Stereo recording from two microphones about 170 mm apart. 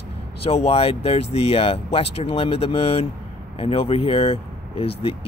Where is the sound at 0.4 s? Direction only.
35° left (ahead or behind).